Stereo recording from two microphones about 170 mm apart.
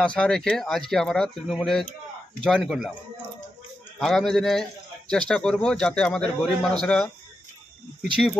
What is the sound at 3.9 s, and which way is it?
A man's voice, centre (ahead or behind).